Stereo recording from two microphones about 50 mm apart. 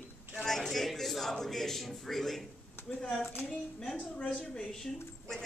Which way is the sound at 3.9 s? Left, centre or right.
Left.